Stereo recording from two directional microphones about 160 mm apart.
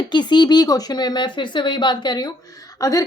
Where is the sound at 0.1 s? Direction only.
30° left (ahead or behind).